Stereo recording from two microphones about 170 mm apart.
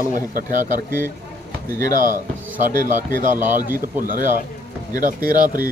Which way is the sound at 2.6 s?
50° right (ahead or behind).